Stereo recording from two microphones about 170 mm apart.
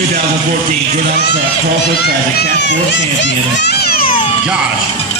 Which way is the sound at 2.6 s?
90° left.